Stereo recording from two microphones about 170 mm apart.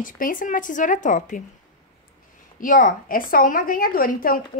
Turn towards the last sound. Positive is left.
turn(degrees=55)  # may be behind; listen again after turning